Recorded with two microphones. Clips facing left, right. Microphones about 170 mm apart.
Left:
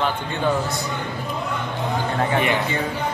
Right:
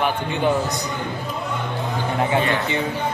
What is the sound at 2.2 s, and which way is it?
Speech, 20° right (ahead or behind).